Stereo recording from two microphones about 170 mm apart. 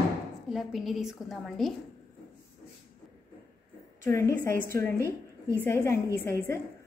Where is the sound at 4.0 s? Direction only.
15° left (ahead or behind).